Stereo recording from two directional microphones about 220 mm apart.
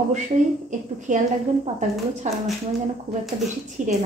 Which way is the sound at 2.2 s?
35° right (ahead or behind).